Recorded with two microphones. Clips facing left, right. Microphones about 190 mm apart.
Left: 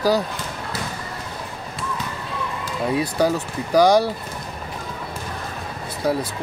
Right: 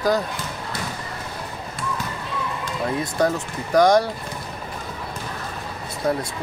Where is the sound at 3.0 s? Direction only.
5° left (ahead or behind).